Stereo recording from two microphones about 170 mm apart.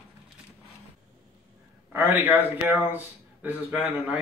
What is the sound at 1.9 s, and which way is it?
A man's voice, 10° right (ahead or behind).